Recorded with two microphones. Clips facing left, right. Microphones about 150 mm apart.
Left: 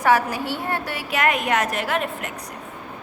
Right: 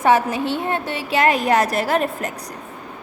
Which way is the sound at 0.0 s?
25° right (ahead or behind).